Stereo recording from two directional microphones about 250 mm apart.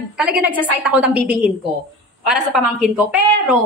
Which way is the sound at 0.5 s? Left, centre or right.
Centre.